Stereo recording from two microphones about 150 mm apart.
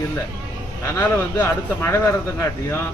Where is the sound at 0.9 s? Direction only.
15° left (ahead or behind).